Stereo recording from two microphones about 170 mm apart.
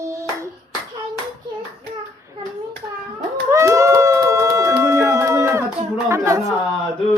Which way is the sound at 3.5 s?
15° right (ahead or behind).